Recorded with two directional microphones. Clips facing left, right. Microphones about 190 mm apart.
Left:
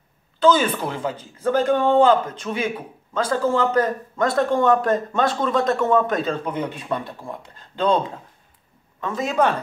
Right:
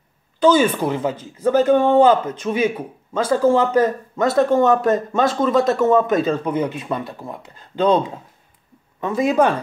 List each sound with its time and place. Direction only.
0.4 s a man's voice: 10° right (ahead or behind)
9.0 s a man's voice: 15° right (ahead or behind)